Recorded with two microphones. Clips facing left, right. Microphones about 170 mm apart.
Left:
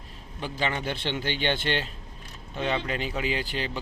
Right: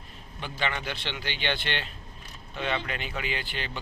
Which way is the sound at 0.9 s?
50° left (ahead or behind).